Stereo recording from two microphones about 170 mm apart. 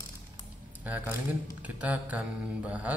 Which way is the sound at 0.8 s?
10° right (ahead or behind).